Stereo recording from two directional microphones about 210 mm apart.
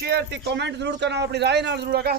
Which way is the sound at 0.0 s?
50° right (ahead or behind).